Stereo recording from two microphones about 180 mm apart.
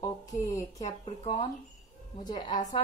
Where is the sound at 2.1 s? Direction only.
25° left (ahead or behind).